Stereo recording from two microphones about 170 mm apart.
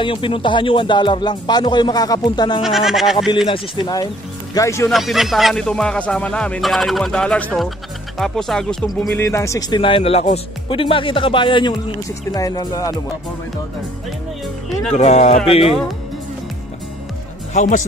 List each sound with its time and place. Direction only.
0.0 s speech: 30° left (ahead or behind)
2.6 s speech: centre (ahead or behind)
3.4 s speech: 30° left (ahead or behind)
4.9 s speech: centre (ahead or behind); by 12.9 s 20° left (ahead or behind)
14.9 s speech: 40° left (ahead or behind)
17.6 s a man's voice: 45° left (ahead or behind)